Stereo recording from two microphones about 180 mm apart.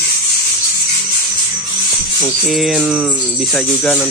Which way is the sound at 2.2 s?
Centre (ahead or behind).